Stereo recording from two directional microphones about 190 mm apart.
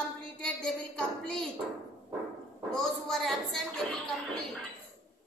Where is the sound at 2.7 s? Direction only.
Centre (ahead or behind).